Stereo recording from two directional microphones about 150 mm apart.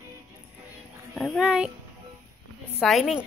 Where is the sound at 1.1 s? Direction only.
Centre (ahead or behind).